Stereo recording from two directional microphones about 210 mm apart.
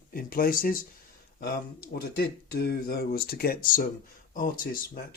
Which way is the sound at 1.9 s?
50° left (ahead or behind).